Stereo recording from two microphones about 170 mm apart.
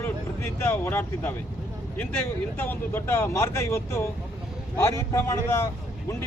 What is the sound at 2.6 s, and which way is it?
Speech, 10° left (ahead or behind).